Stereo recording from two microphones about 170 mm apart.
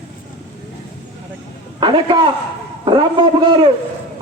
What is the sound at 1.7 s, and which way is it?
A man's voice, 25° right (ahead or behind).